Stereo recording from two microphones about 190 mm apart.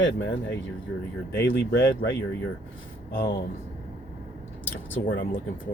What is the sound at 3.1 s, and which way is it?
Speech, 50° left (ahead or behind).